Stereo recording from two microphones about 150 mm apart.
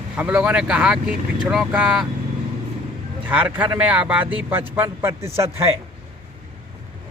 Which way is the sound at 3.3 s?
10° right (ahead or behind).